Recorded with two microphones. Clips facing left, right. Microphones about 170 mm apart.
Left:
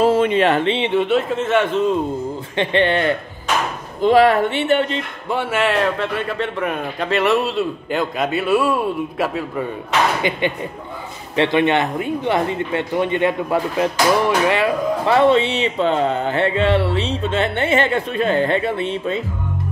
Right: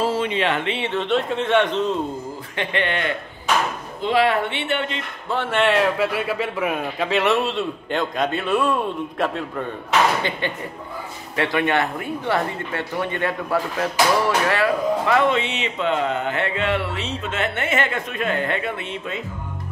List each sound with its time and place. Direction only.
0.0 s speech: 55° left (ahead or behind)
0.7 s speech: 20° left (ahead or behind)
0.9 s a man's voice: 5° left (ahead or behind)
2.5 s speech: 30° left (ahead or behind)
5.3 s a man's voice: 10° left (ahead or behind); by 19.2 s 30° left (ahead or behind)